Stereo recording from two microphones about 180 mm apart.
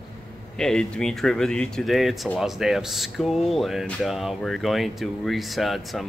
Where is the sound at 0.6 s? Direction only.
5° left (ahead or behind).